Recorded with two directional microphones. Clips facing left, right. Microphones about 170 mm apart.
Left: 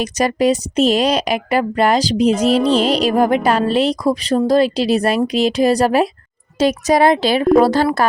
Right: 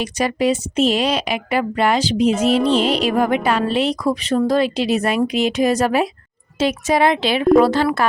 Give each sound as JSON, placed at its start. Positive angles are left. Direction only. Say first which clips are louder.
{"t": 0.0, "sound": "speech", "louder": "left 3 dB", "side_deg": 40}